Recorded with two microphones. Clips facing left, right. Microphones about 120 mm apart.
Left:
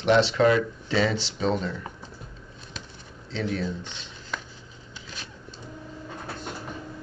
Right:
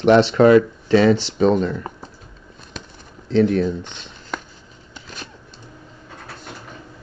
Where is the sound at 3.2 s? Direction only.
55° right (ahead or behind).